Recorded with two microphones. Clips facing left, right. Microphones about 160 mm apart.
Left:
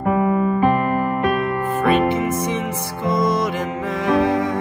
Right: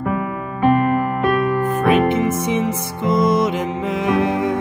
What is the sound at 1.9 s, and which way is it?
Music, 20° right (ahead or behind).